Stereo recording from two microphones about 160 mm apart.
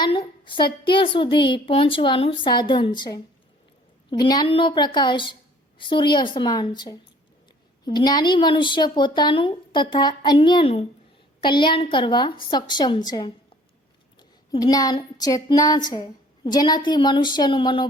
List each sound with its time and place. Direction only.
0.0 s a woman's voice: 30° left (ahead or behind)